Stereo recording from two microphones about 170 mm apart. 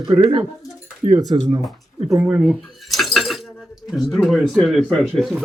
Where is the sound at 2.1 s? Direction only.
15° right (ahead or behind).